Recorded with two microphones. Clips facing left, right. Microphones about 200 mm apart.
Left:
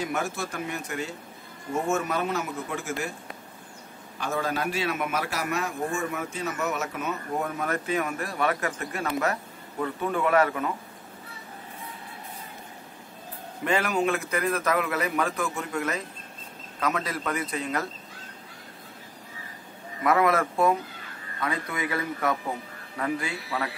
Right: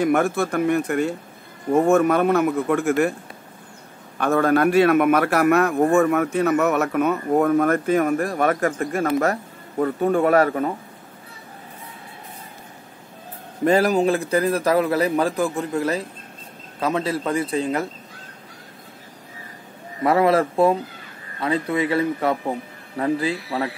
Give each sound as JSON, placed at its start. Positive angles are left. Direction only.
{"t": 0.0, "sound": "a man's voice", "side_deg": -55}
{"t": 4.2, "sound": "a man's voice", "side_deg": -60}
{"t": 13.7, "sound": "a man's voice", "side_deg": -35}
{"t": 20.0, "sound": "a man's voice", "side_deg": -30}